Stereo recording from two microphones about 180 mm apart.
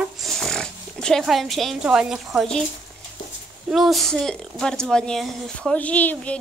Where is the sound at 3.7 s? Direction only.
Centre (ahead or behind).